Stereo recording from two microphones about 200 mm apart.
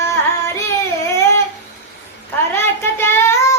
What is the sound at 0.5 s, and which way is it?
Child singing, 15° left (ahead or behind).